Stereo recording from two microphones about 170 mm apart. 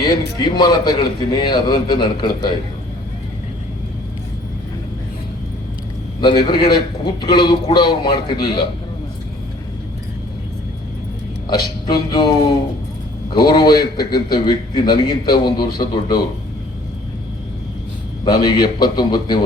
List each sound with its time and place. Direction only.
0.3 s a man's voice: 25° left (ahead or behind)
6.1 s a man's voice: 25° left (ahead or behind)
11.4 s a man's voice: 25° left (ahead or behind)
13.3 s a man's voice: 20° left (ahead or behind)
18.3 s a man's voice: 25° left (ahead or behind)